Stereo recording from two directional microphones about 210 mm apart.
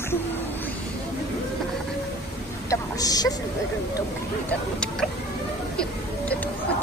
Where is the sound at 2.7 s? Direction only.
15° left (ahead or behind).